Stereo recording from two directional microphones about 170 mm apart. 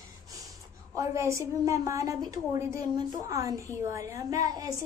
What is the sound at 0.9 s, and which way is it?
A woman's voice, 15° right (ahead or behind).